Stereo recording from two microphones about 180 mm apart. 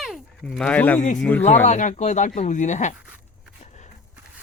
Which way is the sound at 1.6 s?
40° left (ahead or behind).